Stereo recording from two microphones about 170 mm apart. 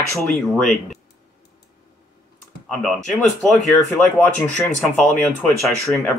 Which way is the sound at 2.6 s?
5° left (ahead or behind).